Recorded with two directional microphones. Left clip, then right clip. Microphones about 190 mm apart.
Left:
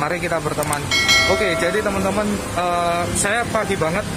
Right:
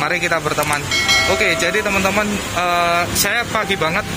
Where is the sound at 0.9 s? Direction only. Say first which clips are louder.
Even; centre (ahead or behind).